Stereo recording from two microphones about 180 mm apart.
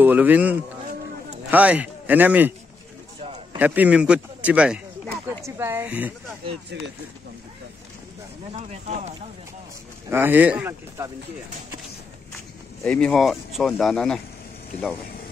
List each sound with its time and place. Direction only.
0.0 s a man's voice: 10° right (ahead or behind)
3.5 s a man's voice: 10° right (ahead or behind)
6.7 s speech: 75° right (ahead or behind)
10.0 s a man's voice: 10° right (ahead or behind)
12.8 s speech: 5° left (ahead or behind)